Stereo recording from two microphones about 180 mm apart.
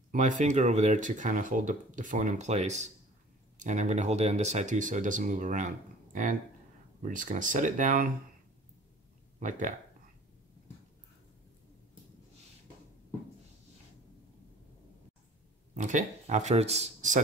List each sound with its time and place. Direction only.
0.1 s speech: 45° right (ahead or behind)
7.0 s speech: 45° right (ahead or behind)
9.4 s speech: 45° right (ahead or behind)
15.7 s speech: 45° right (ahead or behind)